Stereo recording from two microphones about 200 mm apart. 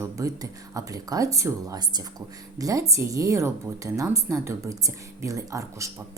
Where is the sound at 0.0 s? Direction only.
15° right (ahead or behind).